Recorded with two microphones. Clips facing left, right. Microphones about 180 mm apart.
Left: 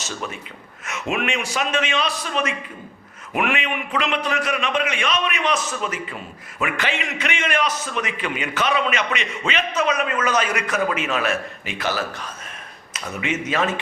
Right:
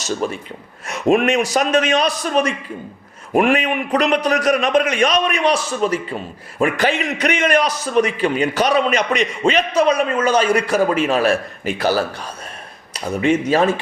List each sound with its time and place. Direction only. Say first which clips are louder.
0.2 s a man's voice: right 8 dB; 40° right (ahead or behind)